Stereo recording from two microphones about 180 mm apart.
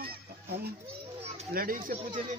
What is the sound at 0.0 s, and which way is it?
Children playing, 60° right (ahead or behind).